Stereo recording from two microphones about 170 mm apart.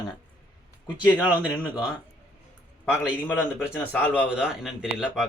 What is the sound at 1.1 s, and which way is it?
Speech, 5° right (ahead or behind).